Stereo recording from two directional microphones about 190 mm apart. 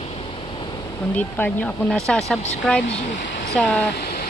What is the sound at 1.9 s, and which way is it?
Speech, 5° left (ahead or behind).